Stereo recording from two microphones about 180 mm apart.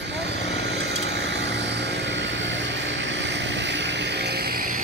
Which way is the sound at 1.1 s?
75° right (ahead or behind).